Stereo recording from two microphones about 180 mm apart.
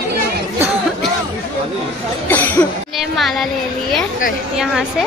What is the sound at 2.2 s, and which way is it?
Speech, 10° left (ahead or behind).